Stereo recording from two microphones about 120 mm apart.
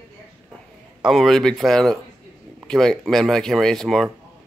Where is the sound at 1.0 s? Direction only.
Centre (ahead or behind).